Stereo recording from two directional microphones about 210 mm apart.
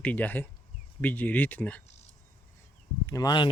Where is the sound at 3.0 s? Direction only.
15° left (ahead or behind).